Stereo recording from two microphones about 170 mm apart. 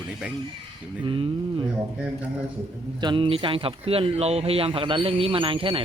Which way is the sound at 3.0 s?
30° right (ahead or behind).